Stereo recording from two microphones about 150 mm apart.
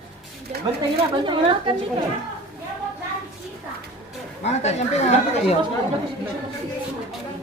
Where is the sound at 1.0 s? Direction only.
35° right (ahead or behind).